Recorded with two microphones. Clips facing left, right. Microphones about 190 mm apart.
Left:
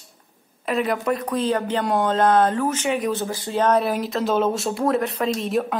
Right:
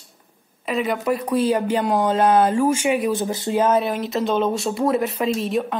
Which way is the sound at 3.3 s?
25° right (ahead or behind).